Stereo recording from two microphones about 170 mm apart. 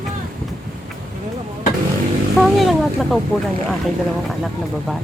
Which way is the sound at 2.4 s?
Centre (ahead or behind).